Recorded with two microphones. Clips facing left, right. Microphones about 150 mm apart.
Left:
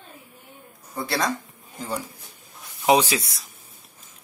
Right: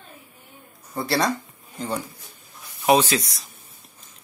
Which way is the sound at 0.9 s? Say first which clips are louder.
Right 3 dB; centre (ahead or behind).